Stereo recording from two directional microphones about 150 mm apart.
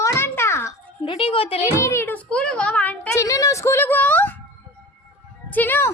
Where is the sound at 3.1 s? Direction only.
20° left (ahead or behind).